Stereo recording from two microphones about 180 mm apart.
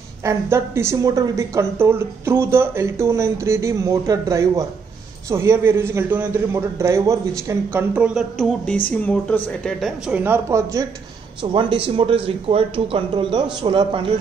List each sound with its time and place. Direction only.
0.2 s a woman's voice: 15° right (ahead or behind)
11.5 s speech: 30° right (ahead or behind)